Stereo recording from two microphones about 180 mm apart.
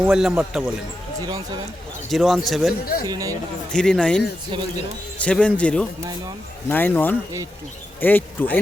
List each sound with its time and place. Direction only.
0.0 s a man's voice: 5° right (ahead or behind)
2.0 s a man's voice: centre (ahead or behind)
3.1 s speech: 20° right (ahead or behind)
3.7 s a man's voice: 5° left (ahead or behind)
4.5 s speech: 25° right (ahead or behind)
5.1 s a man's voice: 5° left (ahead or behind)